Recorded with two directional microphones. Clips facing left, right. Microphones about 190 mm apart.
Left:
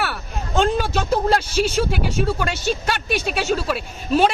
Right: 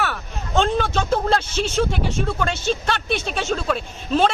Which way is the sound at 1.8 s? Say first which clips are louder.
Left 1 dB; 5° left (ahead or behind).